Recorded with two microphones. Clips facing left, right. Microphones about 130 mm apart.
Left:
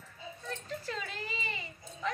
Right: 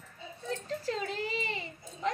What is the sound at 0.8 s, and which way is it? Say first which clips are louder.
Speech: right 7 dB; 25° right (ahead or behind).